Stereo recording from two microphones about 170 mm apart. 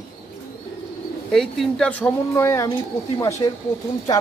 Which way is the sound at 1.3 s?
Centre (ahead or behind).